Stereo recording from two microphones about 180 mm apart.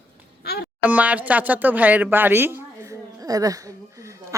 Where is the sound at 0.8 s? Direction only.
10° right (ahead or behind).